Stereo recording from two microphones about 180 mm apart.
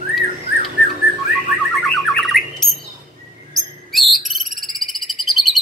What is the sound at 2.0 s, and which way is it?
Bird, centre (ahead or behind).